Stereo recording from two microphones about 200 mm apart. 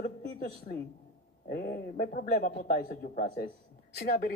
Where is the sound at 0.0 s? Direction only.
50° left (ahead or behind).